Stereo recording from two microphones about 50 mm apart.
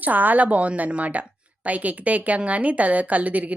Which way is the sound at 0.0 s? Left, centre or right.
Right.